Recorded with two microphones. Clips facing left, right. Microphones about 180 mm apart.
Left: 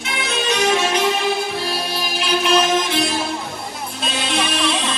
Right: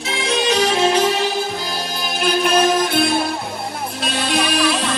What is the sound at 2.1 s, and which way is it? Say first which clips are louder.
Music: right 1 dB; 45° right (ahead or behind).